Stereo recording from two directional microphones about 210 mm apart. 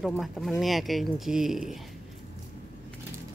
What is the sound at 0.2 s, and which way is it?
Speech, centre (ahead or behind).